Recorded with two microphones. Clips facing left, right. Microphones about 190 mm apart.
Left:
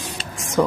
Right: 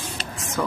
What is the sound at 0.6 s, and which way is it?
Speech, 20° left (ahead or behind).